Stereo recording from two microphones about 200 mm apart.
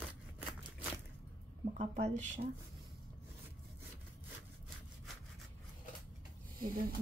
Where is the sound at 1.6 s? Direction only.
35° right (ahead or behind).